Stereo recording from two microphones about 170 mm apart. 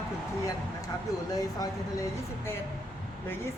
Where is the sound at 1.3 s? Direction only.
20° left (ahead or behind).